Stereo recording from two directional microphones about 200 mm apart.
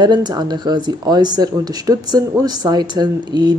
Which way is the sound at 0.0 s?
20° right (ahead or behind).